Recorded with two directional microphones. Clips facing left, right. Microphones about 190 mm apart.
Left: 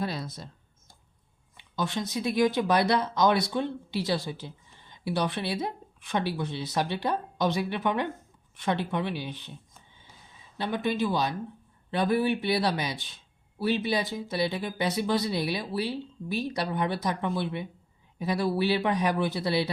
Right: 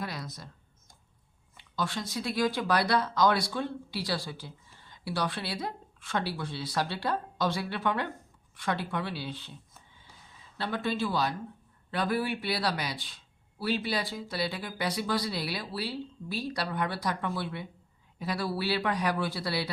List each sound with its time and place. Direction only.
0.0 s a sound: 25° left (ahead or behind)
1.5 s speech: 20° left (ahead or behind)
10.6 s speech: 20° left (ahead or behind)